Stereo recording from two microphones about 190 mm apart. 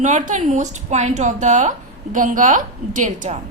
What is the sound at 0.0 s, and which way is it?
A woman's voice, 40° right (ahead or behind).